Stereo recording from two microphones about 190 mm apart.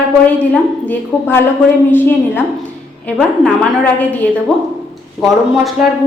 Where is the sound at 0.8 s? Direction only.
10° left (ahead or behind).